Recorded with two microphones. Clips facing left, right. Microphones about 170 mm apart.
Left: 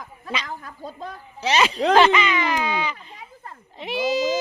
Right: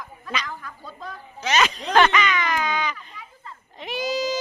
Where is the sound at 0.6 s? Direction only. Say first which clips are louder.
Left 3 dB; 40° left (ahead or behind).